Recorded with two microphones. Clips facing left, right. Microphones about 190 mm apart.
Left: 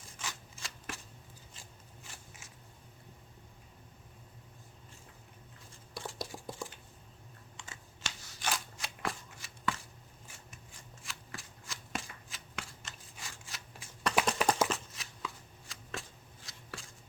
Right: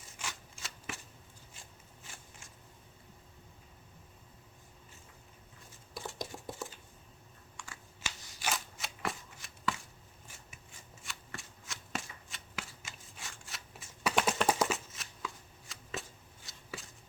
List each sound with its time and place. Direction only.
0.2 s shuffling cards: centre (ahead or behind)
5.9 s a sound: centre (ahead or behind)
7.5 s computer keyboard: 20° left (ahead or behind)
8.0 s shuffling cards: 5° right (ahead or behind)